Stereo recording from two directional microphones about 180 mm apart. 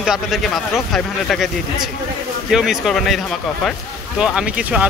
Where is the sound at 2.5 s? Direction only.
5° right (ahead or behind).